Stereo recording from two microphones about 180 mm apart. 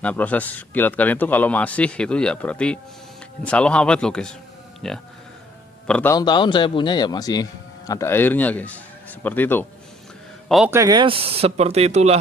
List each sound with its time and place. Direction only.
0.0 s a man's voice: 10° left (ahead or behind)
6.1 s a man's voice: 25° left (ahead or behind)
10.7 s speech: 20° right (ahead or behind); by 12.2 s 35° right (ahead or behind)